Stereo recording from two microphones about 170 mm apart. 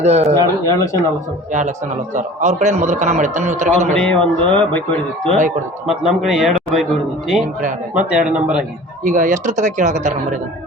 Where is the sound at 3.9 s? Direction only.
5° left (ahead or behind).